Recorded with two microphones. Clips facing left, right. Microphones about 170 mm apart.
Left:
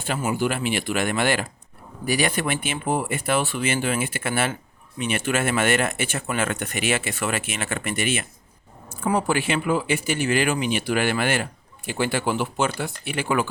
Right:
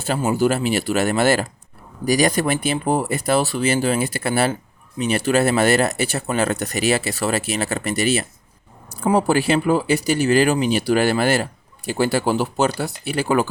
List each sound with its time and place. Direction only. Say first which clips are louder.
0.3 s speech: right 6 dB; 40° right (ahead or behind)